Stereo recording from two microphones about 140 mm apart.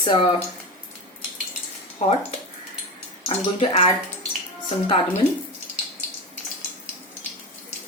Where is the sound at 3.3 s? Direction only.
45° left (ahead or behind).